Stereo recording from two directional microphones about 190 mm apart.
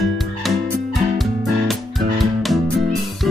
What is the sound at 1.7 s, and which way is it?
Music, centre (ahead or behind).